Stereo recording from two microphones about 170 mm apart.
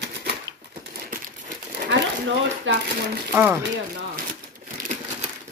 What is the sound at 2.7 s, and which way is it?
Speech, 90° right.